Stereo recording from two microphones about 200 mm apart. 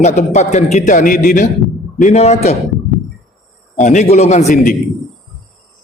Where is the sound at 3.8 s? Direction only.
35° left (ahead or behind).